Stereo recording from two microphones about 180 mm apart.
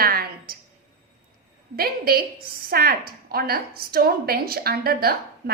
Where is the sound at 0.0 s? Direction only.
55° right (ahead or behind).